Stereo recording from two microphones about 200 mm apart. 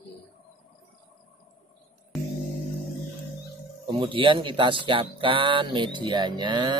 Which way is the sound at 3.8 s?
25° right (ahead or behind).